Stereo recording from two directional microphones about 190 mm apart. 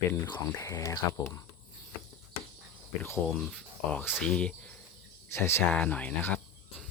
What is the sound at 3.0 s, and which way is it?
Speech, 5° left (ahead or behind).